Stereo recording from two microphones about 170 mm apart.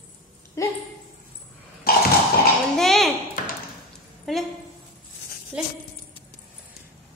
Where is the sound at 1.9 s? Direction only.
65° left (ahead or behind).